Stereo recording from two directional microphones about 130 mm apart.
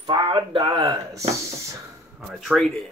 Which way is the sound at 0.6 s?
30° right (ahead or behind).